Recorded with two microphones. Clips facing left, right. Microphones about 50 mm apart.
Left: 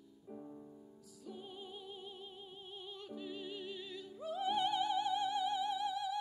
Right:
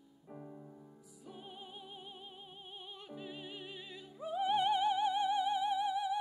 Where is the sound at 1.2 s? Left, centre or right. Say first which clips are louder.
Left 2 dB; centre.